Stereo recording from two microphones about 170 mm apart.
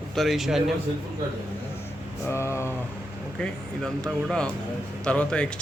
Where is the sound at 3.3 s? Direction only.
5° left (ahead or behind).